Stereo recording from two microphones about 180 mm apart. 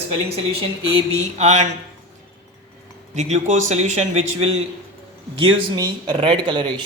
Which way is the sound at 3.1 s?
40° right (ahead or behind).